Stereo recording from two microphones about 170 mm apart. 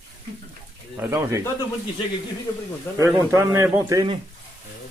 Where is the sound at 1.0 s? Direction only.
15° right (ahead or behind).